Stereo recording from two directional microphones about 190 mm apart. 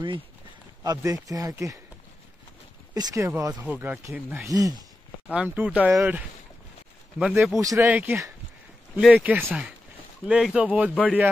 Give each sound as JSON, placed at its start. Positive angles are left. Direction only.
{"t": 0.8, "sound": "speech", "side_deg": -20}
{"t": 2.9, "sound": "speech", "side_deg": -20}
{"t": 4.5, "sound": "speech", "side_deg": -20}
{"t": 5.3, "sound": "speech", "side_deg": -5}
{"t": 7.5, "sound": "speech", "side_deg": -15}